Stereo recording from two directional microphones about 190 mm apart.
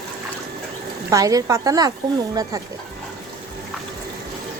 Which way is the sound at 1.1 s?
20° right (ahead or behind).